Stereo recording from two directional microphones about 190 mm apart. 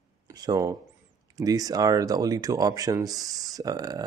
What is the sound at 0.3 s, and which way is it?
Speech, 20° right (ahead or behind).